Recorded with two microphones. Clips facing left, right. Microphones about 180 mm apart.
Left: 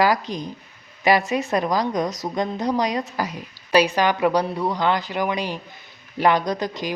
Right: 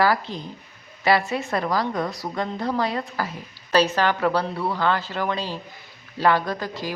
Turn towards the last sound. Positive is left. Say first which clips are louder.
# left 3 dB
turn(degrees=20)  # may be behind; listen again after turning